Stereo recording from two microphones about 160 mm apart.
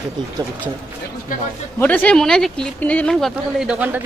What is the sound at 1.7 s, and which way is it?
Speech, 10° left (ahead or behind).